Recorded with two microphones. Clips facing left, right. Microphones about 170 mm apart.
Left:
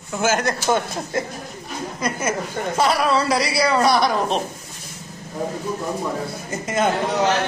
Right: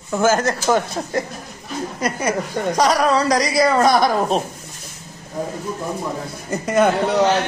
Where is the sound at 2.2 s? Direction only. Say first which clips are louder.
Right 5 dB; 40° right (ahead or behind).